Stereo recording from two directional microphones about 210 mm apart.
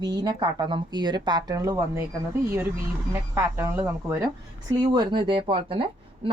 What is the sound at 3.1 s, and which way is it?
Speech, 15° right (ahead or behind).